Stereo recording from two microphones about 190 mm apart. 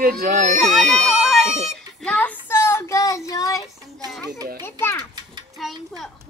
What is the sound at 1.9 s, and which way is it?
Child singing, 5° left (ahead or behind).